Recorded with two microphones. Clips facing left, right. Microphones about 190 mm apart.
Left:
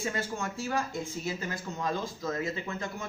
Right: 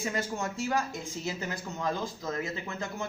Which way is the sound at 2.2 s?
20° right (ahead or behind).